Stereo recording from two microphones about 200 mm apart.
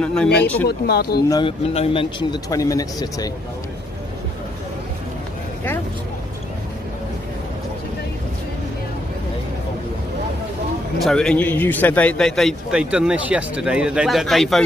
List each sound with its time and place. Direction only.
0.0 s a man's voice: 5° left (ahead or behind)
0.7 s speech: 55° left (ahead or behind)
1.3 s speech: 30° left (ahead or behind)
11.0 s a man's voice: centre (ahead or behind)